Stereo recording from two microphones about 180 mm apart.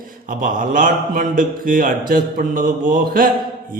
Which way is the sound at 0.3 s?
50° right (ahead or behind).